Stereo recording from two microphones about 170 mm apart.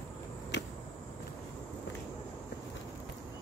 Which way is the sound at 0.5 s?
90° left.